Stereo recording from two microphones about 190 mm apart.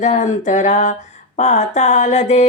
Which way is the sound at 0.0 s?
40° left (ahead or behind).